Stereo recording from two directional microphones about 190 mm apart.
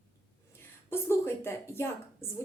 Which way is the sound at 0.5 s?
15° left (ahead or behind).